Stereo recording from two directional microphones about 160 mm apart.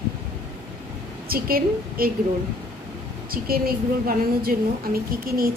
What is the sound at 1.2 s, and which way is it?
Speech, 70° right (ahead or behind).